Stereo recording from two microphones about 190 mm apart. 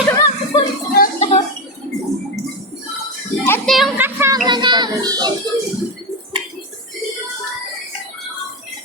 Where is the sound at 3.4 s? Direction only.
10° left (ahead or behind).